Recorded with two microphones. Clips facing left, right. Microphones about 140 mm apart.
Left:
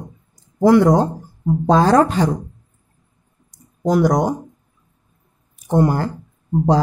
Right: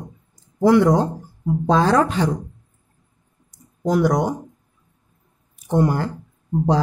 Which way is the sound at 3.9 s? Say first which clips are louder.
Left 2 dB; 40° left (ahead or behind).